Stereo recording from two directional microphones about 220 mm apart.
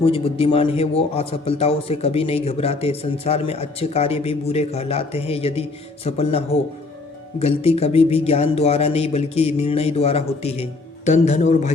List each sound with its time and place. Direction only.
0.0 s a man's voice: 25° left (ahead or behind)